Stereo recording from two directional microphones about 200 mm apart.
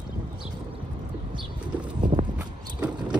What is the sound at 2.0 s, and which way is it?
Horse, 40° right (ahead or behind).